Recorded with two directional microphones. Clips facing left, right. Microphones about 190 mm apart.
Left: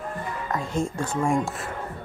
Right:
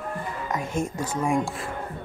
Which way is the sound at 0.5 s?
20° right (ahead or behind).